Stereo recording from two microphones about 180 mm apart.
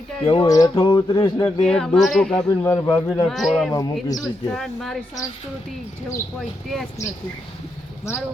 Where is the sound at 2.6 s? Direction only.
20° left (ahead or behind).